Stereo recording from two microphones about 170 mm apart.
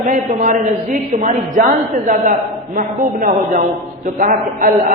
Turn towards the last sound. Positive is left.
turn(degrees=-55)  # may be behind; listen again after turning